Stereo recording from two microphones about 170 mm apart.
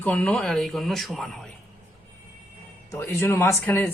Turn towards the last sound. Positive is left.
turn(degrees=15)  # may be behind; listen again after turning